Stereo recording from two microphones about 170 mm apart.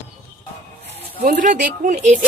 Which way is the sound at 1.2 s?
50° right (ahead or behind).